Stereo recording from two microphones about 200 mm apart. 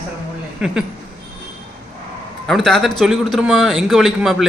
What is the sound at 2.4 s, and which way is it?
A man's voice, centre (ahead or behind).